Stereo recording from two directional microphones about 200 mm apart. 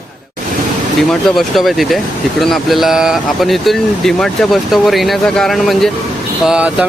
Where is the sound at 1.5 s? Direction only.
Centre (ahead or behind).